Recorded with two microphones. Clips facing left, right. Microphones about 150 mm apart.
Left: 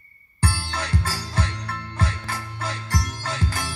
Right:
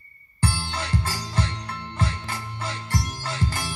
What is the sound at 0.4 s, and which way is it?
Music, 15° right (ahead or behind).